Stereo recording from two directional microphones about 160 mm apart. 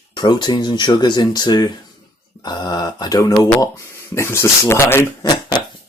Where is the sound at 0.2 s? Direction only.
30° left (ahead or behind).